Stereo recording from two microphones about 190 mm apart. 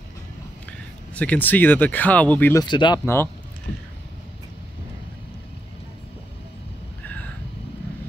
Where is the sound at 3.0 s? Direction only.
15° left (ahead or behind).